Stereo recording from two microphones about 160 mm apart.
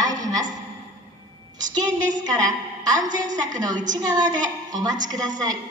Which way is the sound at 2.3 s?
20° right (ahead or behind).